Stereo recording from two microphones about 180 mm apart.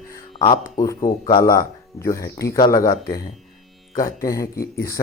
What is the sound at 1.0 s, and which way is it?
Speech, 45° left (ahead or behind).